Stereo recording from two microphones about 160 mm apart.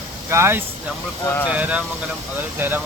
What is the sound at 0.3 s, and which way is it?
Speech, 15° right (ahead or behind).